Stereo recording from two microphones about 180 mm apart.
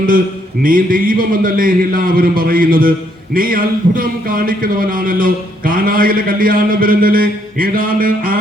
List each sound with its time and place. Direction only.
0.6 s a man's voice: 50° right (ahead or behind)